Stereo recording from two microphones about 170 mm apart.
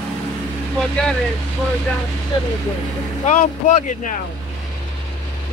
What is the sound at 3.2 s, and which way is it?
Speech, 45° left (ahead or behind).